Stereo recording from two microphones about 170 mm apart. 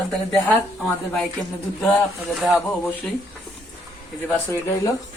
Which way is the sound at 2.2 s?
Centre (ahead or behind).